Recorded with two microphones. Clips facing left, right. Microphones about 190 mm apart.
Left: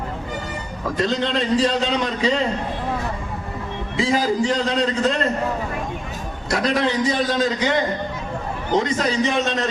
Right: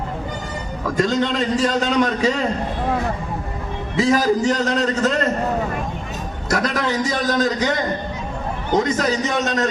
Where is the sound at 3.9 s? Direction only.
45° right (ahead or behind).